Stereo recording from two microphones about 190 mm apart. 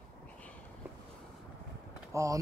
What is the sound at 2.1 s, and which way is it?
Speech, 15° right (ahead or behind).